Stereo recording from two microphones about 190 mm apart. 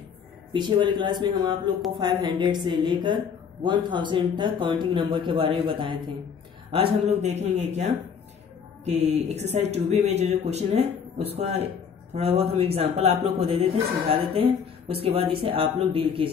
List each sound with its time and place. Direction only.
0.5 s speech: 25° right (ahead or behind)